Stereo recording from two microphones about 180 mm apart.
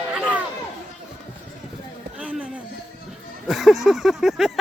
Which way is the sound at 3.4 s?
Centre (ahead or behind).